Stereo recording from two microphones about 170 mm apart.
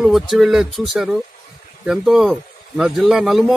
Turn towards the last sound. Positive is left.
turn(degrees=0)  # may be behind; listen again after turning